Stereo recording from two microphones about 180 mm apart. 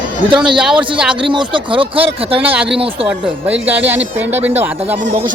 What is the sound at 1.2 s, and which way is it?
Speech, 25° right (ahead or behind).